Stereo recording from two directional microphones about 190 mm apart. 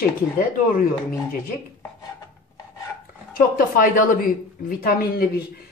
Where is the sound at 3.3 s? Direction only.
45° left (ahead or behind).